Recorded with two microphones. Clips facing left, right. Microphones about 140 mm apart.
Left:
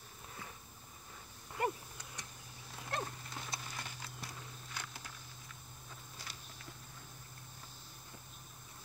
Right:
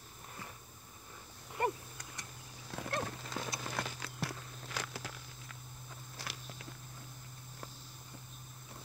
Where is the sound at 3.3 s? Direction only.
90° right.